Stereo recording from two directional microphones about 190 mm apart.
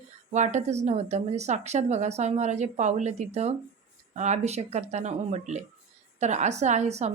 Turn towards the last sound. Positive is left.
turn(degrees=-35)  # may be behind; listen again after turning